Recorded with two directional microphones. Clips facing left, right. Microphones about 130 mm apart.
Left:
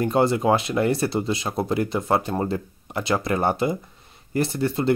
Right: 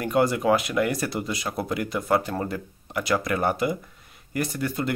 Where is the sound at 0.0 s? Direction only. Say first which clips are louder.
Left 2 dB; 25° left (ahead or behind).